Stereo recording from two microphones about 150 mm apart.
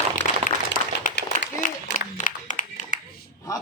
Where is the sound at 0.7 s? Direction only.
60° left (ahead or behind).